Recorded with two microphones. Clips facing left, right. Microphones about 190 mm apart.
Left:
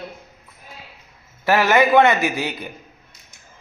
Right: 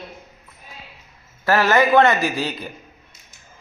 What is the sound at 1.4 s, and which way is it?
A woman's voice, 15° left (ahead or behind).